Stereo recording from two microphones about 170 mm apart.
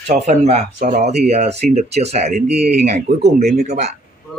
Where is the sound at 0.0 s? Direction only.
40° right (ahead or behind).